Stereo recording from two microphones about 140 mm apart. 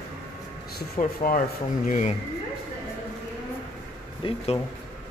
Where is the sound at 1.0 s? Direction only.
65° left (ahead or behind).